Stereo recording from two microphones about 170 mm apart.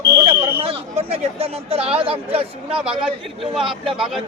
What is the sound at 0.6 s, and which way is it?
Speech, 35° right (ahead or behind).